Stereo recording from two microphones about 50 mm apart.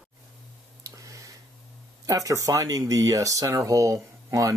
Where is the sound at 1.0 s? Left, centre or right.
Right.